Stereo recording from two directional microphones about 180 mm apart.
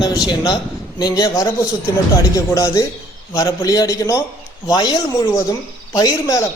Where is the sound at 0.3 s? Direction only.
25° left (ahead or behind).